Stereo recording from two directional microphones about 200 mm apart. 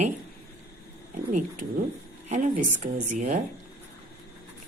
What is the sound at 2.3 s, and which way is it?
A woman's voice, 35° right (ahead or behind).